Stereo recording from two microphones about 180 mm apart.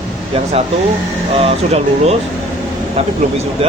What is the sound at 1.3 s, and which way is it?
Speech, 30° right (ahead or behind).